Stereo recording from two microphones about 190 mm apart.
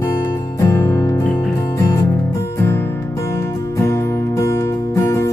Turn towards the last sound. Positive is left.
turn(degrees=15)  # may be behind; listen again after turning